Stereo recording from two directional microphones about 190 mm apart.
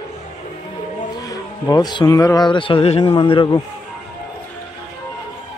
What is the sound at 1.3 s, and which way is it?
Speech, 20° left (ahead or behind).